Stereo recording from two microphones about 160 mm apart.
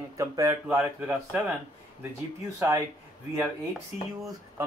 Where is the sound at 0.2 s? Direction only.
20° right (ahead or behind).